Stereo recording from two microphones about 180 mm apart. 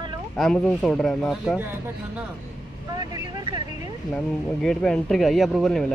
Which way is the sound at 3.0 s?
20° right (ahead or behind).